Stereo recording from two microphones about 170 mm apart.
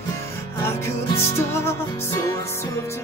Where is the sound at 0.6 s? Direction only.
15° left (ahead or behind).